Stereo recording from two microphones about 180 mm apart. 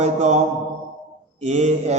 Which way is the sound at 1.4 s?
40° right (ahead or behind).